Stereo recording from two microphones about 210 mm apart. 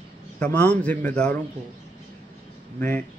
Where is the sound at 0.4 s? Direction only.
5° left (ahead or behind).